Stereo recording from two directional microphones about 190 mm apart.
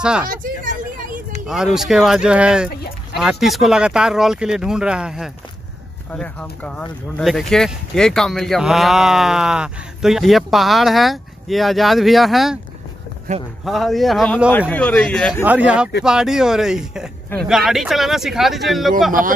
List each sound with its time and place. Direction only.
0.0 s speech: 5° right (ahead or behind)
1.5 s speech: centre (ahead or behind)
2.7 s a sound: 55° left (ahead or behind)
3.2 s speech: centre (ahead or behind)
7.2 s speech: centre (ahead or behind)
13.3 s speech: 40° right (ahead or behind)
13.7 s speech: centre (ahead or behind)
15.4 s speech: 5° right (ahead or behind)